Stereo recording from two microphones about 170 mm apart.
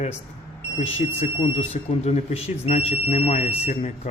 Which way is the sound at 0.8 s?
35° left (ahead or behind).